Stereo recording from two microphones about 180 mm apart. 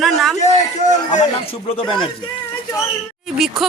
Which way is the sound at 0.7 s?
40° left (ahead or behind).